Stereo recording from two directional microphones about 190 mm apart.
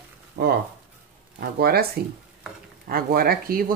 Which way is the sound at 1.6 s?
55° right (ahead or behind).